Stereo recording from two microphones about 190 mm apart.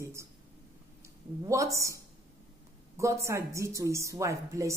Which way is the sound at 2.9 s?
15° right (ahead or behind).